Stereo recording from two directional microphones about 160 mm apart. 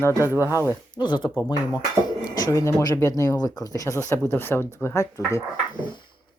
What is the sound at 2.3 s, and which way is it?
Speech, 20° left (ahead or behind).